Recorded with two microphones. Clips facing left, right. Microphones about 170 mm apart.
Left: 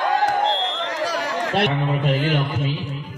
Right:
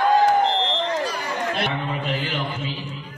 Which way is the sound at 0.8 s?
90° left.